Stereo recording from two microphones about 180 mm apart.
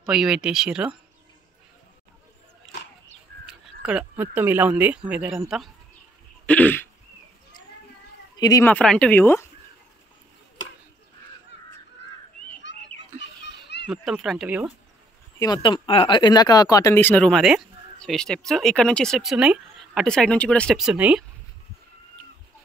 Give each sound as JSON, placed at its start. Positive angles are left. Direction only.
{"t": 0.0, "sound": "speech", "side_deg": -5}
{"t": 2.7, "sound": "a sound", "side_deg": 75}
{"t": 3.4, "sound": "speech", "side_deg": -5}
{"t": 6.4, "sound": "throat clearing", "side_deg": 10}
{"t": 8.4, "sound": "speech", "side_deg": 20}
{"t": 8.6, "sound": "speech", "side_deg": 5}
{"t": 12.7, "sound": "a sound", "side_deg": 80}
{"t": 13.2, "sound": "children playing", "side_deg": 70}
{"t": 13.8, "sound": "speech", "side_deg": -5}
{"t": 15.3, "sound": "speech", "side_deg": 20}